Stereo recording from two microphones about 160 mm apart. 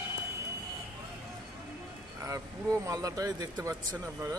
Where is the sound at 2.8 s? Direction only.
20° right (ahead or behind).